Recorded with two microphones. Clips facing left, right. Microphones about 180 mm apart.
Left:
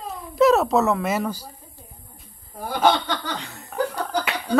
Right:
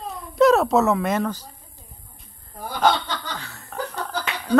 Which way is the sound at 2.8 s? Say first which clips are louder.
Left 1 dB; 15° left (ahead or behind).